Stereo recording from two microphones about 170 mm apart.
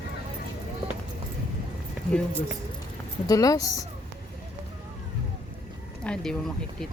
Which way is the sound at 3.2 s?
20° left (ahead or behind).